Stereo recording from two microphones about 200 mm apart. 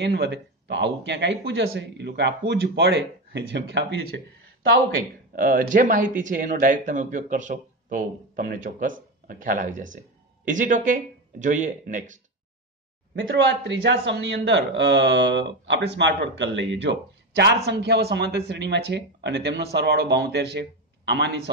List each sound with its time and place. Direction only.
0.0 s speech: 60° right (ahead or behind)
4.9 s speech: 45° right (ahead or behind)
13.1 s speech: 75° right (ahead or behind); by 21.4 s 60° right (ahead or behind)